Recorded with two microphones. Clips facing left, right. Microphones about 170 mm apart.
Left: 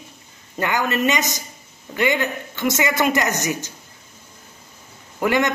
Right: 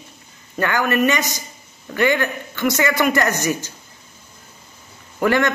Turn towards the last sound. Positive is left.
turn(degrees=15)  # may be behind; listen again after turning